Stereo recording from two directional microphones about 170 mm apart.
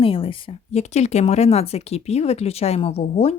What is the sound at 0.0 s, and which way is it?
Speech, 30° left (ahead or behind).